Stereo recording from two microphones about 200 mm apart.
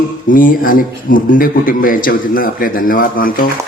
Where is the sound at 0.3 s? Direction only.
45° left (ahead or behind).